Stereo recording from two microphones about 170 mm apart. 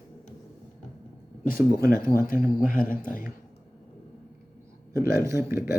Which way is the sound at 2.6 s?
55° left (ahead or behind).